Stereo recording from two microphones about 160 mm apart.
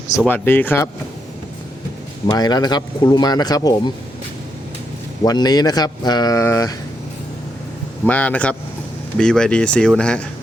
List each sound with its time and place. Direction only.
0.3 s speech: 10° left (ahead or behind)
2.2 s speech: 25° left (ahead or behind)
5.2 s speech: 25° left (ahead or behind)
8.0 s speech: 10° left (ahead or behind)